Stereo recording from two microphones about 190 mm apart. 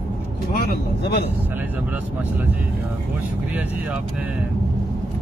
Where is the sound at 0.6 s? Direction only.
60° left (ahead or behind).